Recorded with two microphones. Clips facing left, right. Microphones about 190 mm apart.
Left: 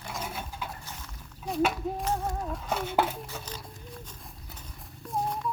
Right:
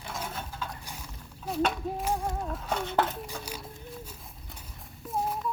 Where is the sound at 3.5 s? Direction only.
10° right (ahead or behind).